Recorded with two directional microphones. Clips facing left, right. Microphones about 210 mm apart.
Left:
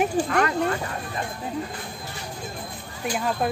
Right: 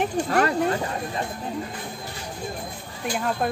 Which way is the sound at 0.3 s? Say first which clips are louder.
Right 1 dB; 35° right (ahead or behind).